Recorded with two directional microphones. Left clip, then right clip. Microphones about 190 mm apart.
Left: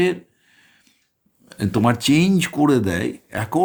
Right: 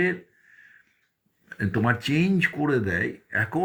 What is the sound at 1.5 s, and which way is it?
Speech, 35° left (ahead or behind).